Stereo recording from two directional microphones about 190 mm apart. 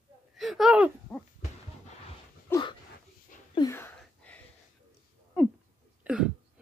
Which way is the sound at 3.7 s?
10° left (ahead or behind).